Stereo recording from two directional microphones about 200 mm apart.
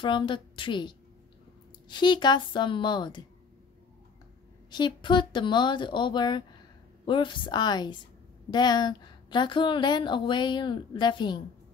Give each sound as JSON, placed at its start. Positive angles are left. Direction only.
{"t": 0.0, "sound": "a woman's voice", "side_deg": 25}
{"t": 4.6, "sound": "a woman's voice", "side_deg": 20}